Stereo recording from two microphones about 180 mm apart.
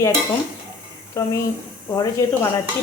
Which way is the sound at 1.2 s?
20° left (ahead or behind).